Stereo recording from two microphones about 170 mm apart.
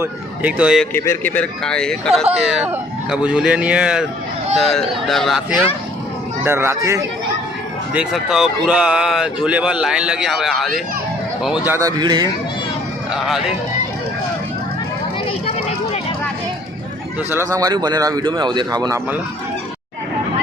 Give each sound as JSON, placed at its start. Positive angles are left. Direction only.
{"t": 0.0, "sound": "speech", "side_deg": -10}
{"t": 0.9, "sound": "a man's voice", "side_deg": 15}
{"t": 6.4, "sound": "speech", "side_deg": -15}
{"t": 7.9, "sound": "speech", "side_deg": -5}
{"t": 15.4, "sound": "a sound", "side_deg": 35}
{"t": 17.3, "sound": "speech", "side_deg": -20}